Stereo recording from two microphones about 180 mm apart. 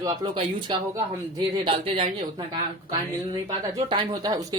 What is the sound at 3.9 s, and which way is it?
Speech, 25° right (ahead or behind).